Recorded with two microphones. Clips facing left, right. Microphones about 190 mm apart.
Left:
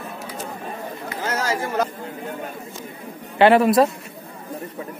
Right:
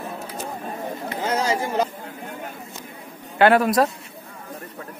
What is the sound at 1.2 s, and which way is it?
Chatter, 15° right (ahead or behind).